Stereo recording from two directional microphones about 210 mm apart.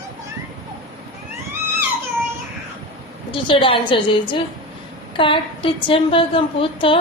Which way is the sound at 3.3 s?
25° left (ahead or behind).